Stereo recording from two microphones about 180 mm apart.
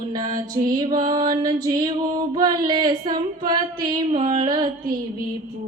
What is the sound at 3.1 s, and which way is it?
Singing, 25° right (ahead or behind).